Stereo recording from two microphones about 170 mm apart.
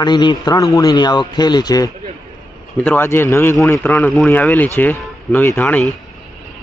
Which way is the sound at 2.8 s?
10° left (ahead or behind).